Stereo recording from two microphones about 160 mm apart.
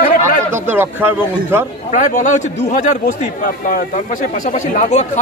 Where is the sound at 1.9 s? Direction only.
50° left (ahead or behind).